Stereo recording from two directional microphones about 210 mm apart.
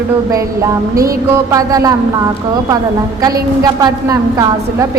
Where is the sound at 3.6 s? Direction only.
20° right (ahead or behind).